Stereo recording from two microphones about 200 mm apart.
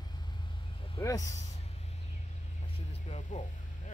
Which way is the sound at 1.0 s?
15° left (ahead or behind).